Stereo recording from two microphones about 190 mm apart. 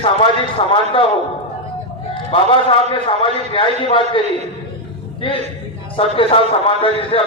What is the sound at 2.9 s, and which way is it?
A man's voice, 30° left (ahead or behind).